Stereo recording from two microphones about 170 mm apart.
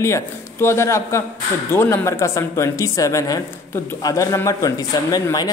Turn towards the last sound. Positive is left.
turn(degrees=20)  # may be behind; listen again after turning